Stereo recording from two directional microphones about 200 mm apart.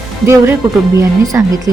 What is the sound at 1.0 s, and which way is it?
Speech, 15° right (ahead or behind).